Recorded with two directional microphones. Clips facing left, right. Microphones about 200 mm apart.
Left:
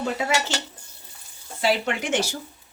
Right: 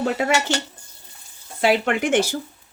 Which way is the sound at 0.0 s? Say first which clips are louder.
Right 4 dB; 55° right (ahead or behind).